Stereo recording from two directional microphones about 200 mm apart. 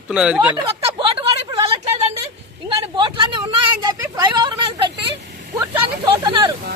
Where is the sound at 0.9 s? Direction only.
25° right (ahead or behind).